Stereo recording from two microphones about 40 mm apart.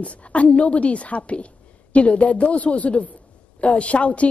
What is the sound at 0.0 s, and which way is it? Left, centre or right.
A woman's voice, left.